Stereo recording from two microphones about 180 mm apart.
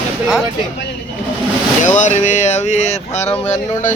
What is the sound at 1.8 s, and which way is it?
Speech, 45° left (ahead or behind).